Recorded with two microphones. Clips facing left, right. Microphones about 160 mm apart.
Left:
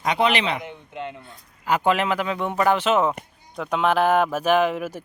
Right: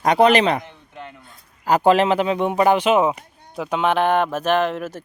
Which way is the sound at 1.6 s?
35° right (ahead or behind).